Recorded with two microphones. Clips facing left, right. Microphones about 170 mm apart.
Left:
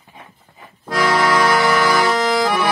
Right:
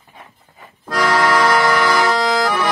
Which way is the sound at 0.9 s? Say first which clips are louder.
Even; 10° left (ahead or behind).